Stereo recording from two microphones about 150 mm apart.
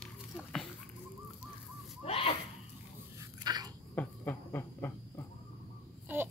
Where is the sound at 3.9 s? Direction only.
15° left (ahead or behind).